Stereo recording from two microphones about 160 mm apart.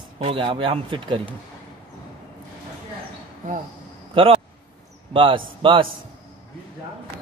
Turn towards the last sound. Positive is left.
turn(degrees=-30)  # may be behind; listen again after turning